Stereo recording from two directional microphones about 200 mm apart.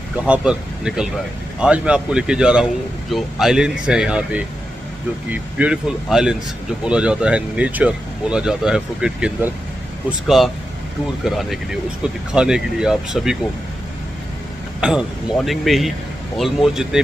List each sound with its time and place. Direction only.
0.2 s speech: 5° right (ahead or behind)
14.8 s speech: 5° right (ahead or behind)